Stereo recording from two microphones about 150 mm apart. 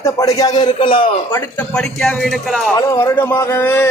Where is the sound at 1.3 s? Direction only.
10° left (ahead or behind).